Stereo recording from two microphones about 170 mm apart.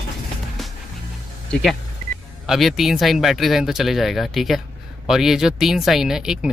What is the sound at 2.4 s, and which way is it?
Speech, centre (ahead or behind).